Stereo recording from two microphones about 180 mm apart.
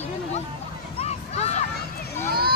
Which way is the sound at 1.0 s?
35° left (ahead or behind).